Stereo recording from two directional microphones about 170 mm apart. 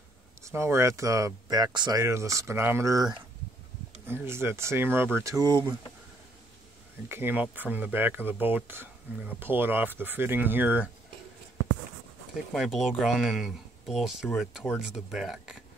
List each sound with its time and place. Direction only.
0.4 s speech: 15° right (ahead or behind)
7.1 s speech: 10° right (ahead or behind)
12.5 s speech: centre (ahead or behind)